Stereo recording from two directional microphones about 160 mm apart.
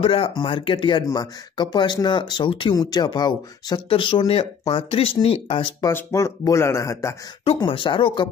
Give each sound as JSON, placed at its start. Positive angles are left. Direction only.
{"t": 0.0, "sound": "speech", "side_deg": 35}
{"t": 5.9, "sound": "speech", "side_deg": 15}
{"t": 7.4, "sound": "speech", "side_deg": 30}